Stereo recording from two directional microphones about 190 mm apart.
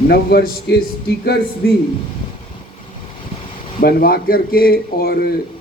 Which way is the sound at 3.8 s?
50° left (ahead or behind).